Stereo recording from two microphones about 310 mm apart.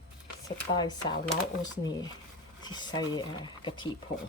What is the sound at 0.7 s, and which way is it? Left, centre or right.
Speech, centre.